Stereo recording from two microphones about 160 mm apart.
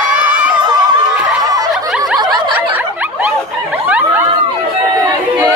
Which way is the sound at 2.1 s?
25° right (ahead or behind).